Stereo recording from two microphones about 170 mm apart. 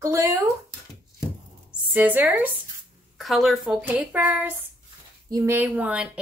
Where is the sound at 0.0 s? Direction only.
15° right (ahead or behind).